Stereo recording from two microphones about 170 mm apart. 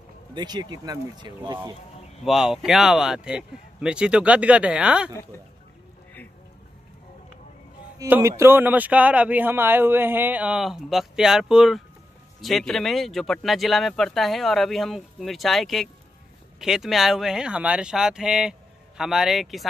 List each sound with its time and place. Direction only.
0.3 s speech: 25° right (ahead or behind)
2.2 s speech: centre (ahead or behind)
8.0 s speech: 15° right (ahead or behind); by 19.7 s centre (ahead or behind)